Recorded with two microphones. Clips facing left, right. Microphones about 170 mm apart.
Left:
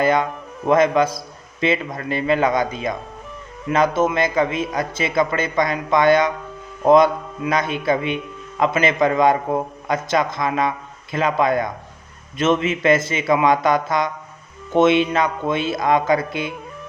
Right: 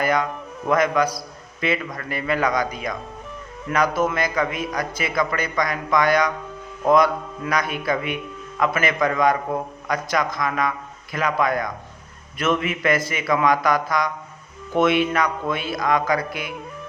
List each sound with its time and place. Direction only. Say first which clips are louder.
0.0 s speech: left 4 dB; 25° left (ahead or behind)